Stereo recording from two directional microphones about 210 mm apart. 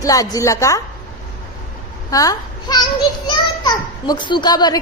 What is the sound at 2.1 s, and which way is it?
A woman's voice, 15° left (ahead or behind).